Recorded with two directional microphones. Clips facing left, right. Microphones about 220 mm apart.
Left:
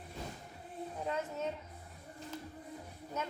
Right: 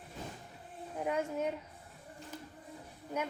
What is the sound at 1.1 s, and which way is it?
Speech, 10° right (ahead or behind).